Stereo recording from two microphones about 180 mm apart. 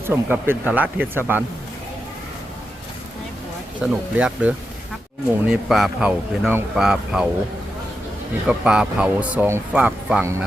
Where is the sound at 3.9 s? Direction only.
5° right (ahead or behind).